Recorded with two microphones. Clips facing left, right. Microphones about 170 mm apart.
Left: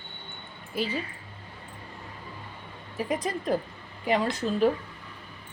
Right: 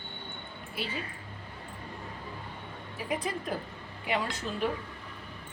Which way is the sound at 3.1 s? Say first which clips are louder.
Left 5 dB; 40° left (ahead or behind).